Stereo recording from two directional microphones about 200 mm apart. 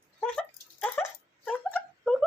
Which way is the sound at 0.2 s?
5° left (ahead or behind).